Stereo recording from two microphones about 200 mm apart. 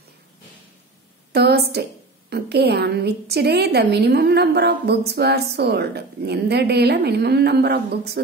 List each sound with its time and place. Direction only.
1.3 s a woman's voice: 55° right (ahead or behind)